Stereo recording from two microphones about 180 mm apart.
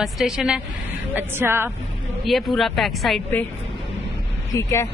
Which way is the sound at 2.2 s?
Centre (ahead or behind).